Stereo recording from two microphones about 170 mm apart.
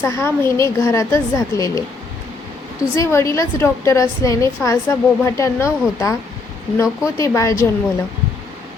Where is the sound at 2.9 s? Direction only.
15° left (ahead or behind).